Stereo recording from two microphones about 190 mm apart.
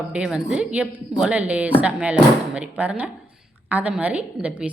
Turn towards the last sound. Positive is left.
turn(degrees=-5)  # may be behind; listen again after turning